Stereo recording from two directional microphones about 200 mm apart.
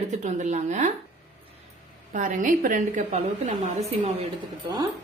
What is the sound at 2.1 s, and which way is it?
A woman's voice, 40° right (ahead or behind).